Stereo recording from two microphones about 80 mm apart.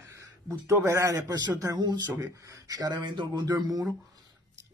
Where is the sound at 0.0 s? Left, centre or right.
Right.